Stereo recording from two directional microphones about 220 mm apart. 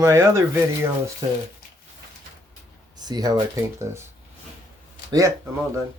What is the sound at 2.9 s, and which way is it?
Speech, 15° right (ahead or behind).